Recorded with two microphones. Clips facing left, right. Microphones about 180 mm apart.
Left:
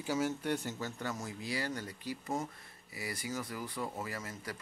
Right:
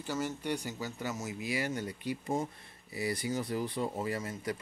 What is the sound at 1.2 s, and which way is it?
Speech, 15° right (ahead or behind).